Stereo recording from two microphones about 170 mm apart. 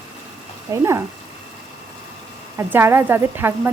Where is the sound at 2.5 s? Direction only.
15° right (ahead or behind).